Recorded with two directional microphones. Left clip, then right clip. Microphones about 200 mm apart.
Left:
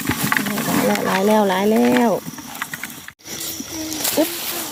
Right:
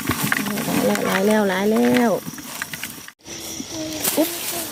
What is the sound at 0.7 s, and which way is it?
Wild animals, 10° left (ahead or behind).